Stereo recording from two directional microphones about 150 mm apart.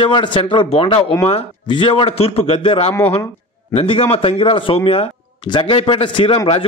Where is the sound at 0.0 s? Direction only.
35° left (ahead or behind).